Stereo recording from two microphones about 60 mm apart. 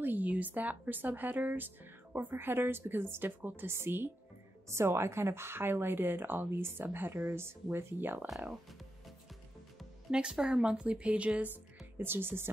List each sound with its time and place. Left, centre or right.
0.0 s speech: right
10.1 s speech: centre; by 12.4 s right